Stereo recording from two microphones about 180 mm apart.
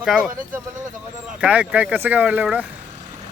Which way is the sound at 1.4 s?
5° right (ahead or behind).